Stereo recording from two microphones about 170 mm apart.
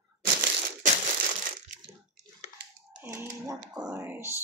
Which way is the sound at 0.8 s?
50° right (ahead or behind).